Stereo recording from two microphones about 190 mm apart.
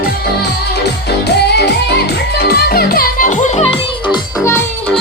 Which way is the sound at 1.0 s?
60° left (ahead or behind).